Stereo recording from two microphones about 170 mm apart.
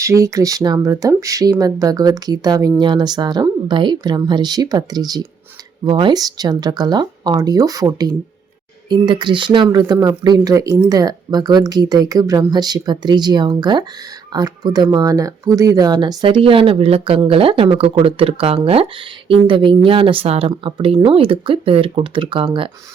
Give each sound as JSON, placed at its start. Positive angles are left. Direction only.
{"t": 0.0, "sound": "speech", "side_deg": -20}